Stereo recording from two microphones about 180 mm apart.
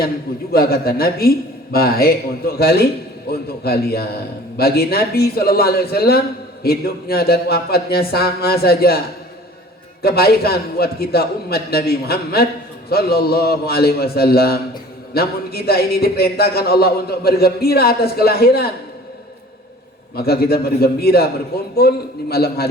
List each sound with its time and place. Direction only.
0.5 s a man's voice: 55° left (ahead or behind)
10.0 s a man's voice: 60° left (ahead or behind)
20.1 s a man's voice: 60° left (ahead or behind)